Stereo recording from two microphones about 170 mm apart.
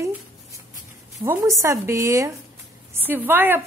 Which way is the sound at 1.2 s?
20° right (ahead or behind).